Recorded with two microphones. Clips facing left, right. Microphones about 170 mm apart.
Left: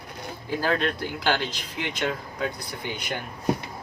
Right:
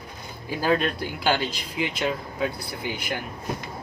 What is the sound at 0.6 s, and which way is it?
Speech, 10° right (ahead or behind).